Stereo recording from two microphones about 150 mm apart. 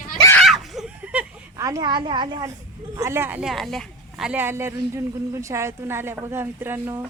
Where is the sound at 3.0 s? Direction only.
15° right (ahead or behind).